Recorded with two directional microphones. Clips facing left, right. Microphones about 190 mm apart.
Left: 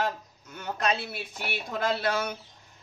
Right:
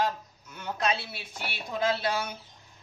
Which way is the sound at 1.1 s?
55° left (ahead or behind).